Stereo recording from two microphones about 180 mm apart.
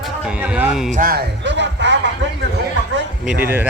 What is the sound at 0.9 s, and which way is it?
Speech, 50° right (ahead or behind).